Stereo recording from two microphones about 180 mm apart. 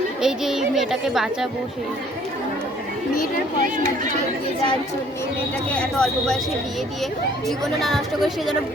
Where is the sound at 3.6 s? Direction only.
45° right (ahead or behind).